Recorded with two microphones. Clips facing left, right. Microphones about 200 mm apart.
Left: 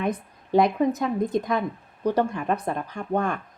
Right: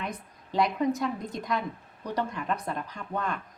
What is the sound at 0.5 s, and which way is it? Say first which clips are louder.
Speech: left 6 dB; 50° left (ahead or behind).